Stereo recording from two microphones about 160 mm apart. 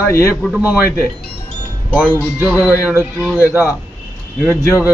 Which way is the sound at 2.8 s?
5° right (ahead or behind).